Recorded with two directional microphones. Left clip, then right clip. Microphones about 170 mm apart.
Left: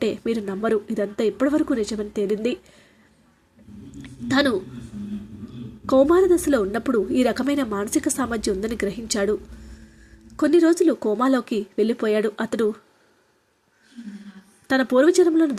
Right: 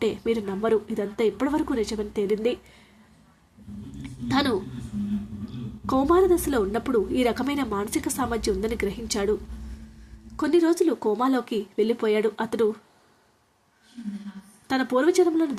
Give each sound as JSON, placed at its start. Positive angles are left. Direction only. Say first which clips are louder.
{"t": 0.0, "sound": "a woman's voice", "louder": "left 1 dB", "side_deg": 25}
{"t": 4.0, "sound": "a sound", "louder": "left 4 dB", "side_deg": 25}
{"t": 5.8, "sound": "a woman's voice", "louder": "left 4 dB", "side_deg": 20}
{"t": 14.7, "sound": "a woman's voice", "louder": "left 5 dB", "side_deg": 25}